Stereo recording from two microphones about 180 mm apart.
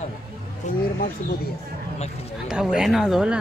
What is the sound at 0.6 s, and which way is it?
Speech, 40° left (ahead or behind).